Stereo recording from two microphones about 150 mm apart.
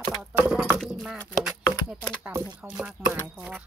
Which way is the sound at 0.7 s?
5° right (ahead or behind).